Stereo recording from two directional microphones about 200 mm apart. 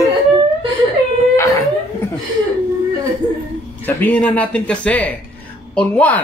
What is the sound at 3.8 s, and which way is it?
Speech, 10° left (ahead or behind).